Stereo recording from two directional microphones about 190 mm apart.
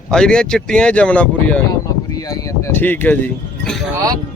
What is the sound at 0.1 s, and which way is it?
Speech, 5° left (ahead or behind).